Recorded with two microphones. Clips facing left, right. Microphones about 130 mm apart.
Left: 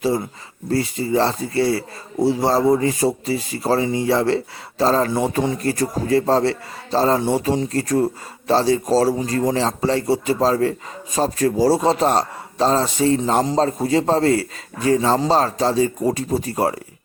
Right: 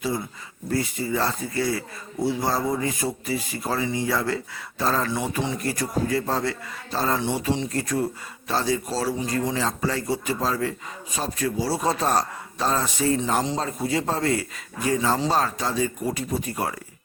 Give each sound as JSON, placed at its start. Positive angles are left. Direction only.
{"t": 0.7, "sound": "a man's voice", "side_deg": 30}
{"t": 11.8, "sound": "speech", "side_deg": 25}
{"t": 13.4, "sound": "a man's voice", "side_deg": 40}